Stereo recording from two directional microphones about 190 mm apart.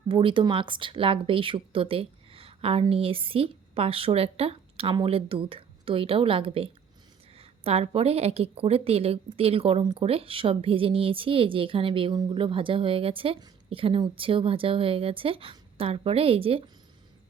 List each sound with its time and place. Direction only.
0.1 s a woman's voice: 25° right (ahead or behind)